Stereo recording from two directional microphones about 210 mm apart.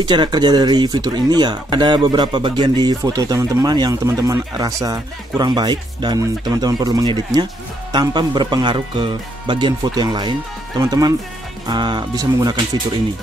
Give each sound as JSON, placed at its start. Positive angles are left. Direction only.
{"t": 0.0, "sound": "speech", "side_deg": -20}